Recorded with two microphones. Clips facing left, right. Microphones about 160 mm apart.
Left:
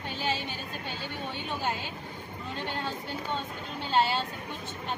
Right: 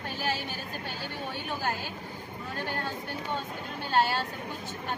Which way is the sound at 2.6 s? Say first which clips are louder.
Right 1 dB; 20° left (ahead or behind).